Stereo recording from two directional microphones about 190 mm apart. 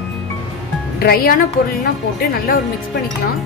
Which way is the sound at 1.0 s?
50° left (ahead or behind).